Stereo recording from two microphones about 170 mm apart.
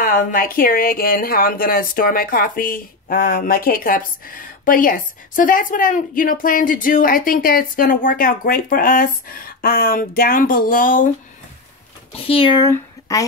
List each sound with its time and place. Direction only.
0.0 s speech: 55° left (ahead or behind)
12.2 s speech: 35° left (ahead or behind)